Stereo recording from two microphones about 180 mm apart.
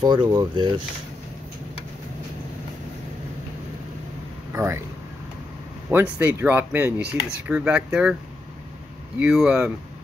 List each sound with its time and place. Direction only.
0.0 s speech: 25° right (ahead or behind)
4.5 s a sound: 15° right (ahead or behind)
5.9 s speech: 10° right (ahead or behind)
9.2 s speech: 5° right (ahead or behind)